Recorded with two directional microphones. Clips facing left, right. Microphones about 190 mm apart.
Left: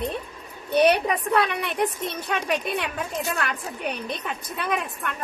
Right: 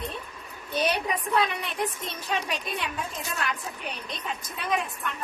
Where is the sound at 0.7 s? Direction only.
65° left (ahead or behind).